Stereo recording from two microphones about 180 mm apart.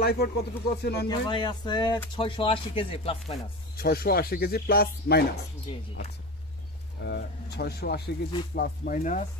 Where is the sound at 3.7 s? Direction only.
55° left (ahead or behind).